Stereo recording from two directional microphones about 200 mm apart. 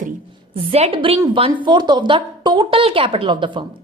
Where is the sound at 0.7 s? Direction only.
30° right (ahead or behind).